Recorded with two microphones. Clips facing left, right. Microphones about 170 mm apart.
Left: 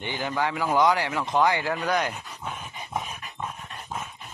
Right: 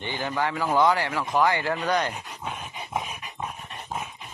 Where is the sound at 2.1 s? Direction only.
10° right (ahead or behind).